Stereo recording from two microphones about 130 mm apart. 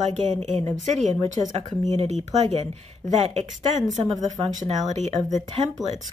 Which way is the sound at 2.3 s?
55° right (ahead or behind).